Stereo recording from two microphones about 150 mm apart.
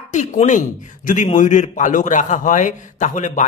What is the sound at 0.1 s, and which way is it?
A man's voice, 55° left (ahead or behind).